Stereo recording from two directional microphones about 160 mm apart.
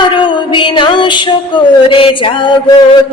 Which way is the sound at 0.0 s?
30° left (ahead or behind).